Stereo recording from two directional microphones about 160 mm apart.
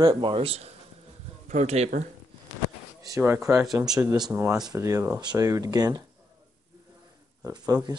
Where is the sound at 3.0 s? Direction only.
20° right (ahead or behind).